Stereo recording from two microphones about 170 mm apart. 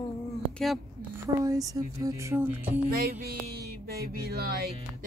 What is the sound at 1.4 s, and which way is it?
Speech, 20° right (ahead or behind).